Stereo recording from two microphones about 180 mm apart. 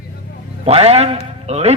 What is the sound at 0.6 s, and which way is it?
A man's voice, 35° right (ahead or behind).